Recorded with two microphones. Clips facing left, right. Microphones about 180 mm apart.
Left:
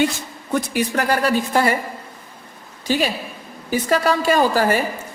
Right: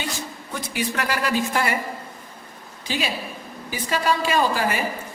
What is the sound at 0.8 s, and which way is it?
Speech, 35° left (ahead or behind).